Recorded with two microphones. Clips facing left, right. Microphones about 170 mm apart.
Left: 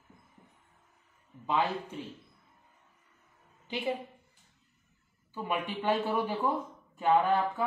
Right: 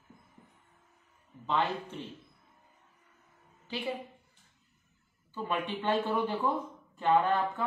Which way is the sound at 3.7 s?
20° left (ahead or behind).